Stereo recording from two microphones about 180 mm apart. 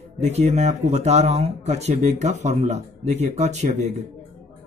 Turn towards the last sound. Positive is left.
turn(degrees=-40)  # may be behind; listen again after turning